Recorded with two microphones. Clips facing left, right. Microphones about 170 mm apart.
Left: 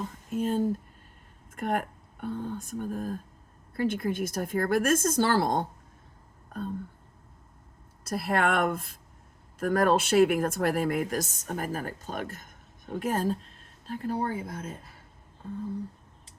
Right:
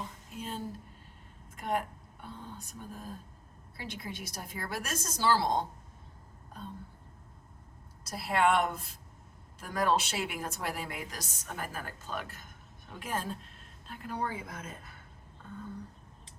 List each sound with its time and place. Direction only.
0.3 s a woman's voice: 50° left (ahead or behind)
8.0 s a woman's voice: 55° left (ahead or behind); by 14.8 s 30° left (ahead or behind)